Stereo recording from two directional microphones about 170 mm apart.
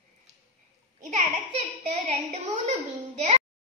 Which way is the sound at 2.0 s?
40° right (ahead or behind).